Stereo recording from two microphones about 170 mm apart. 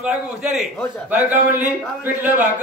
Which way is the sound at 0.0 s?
5° right (ahead or behind).